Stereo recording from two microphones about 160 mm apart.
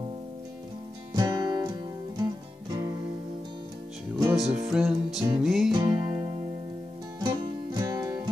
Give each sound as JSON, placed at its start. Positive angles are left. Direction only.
{"t": 1.1, "sound": "music", "side_deg": -25}
{"t": 4.2, "sound": "music", "side_deg": -15}
{"t": 4.7, "sound": "music", "side_deg": -5}
{"t": 5.7, "sound": "music", "side_deg": -20}